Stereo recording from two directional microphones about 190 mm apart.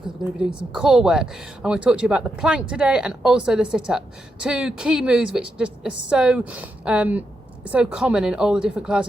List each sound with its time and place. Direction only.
0.3 s a woman's voice: 5° right (ahead or behind)